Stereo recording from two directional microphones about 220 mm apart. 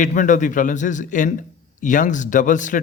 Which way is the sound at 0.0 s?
35° left (ahead or behind).